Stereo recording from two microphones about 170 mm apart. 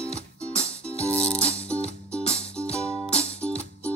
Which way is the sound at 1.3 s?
35° left (ahead or behind).